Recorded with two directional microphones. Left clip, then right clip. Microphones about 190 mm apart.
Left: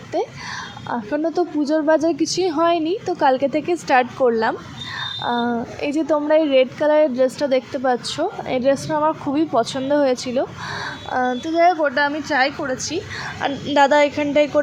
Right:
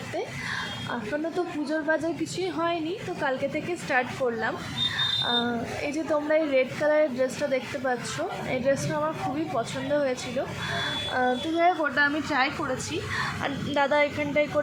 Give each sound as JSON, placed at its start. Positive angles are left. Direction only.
{"t": 0.9, "sound": "a woman's voice", "side_deg": 25}